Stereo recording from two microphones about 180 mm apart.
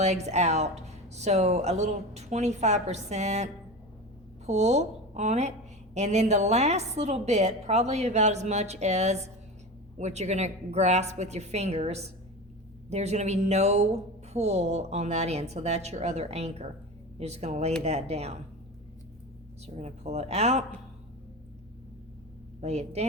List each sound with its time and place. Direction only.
0.0 s a woman's voice: 40° right (ahead or behind)
19.6 s a woman's voice: 35° right (ahead or behind)
22.6 s a woman's voice: 35° right (ahead or behind)